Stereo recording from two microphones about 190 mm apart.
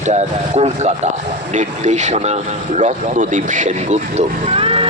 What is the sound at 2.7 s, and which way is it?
Music, 40° right (ahead or behind).